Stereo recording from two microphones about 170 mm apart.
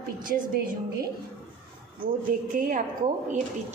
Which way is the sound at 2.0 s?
55° right (ahead or behind).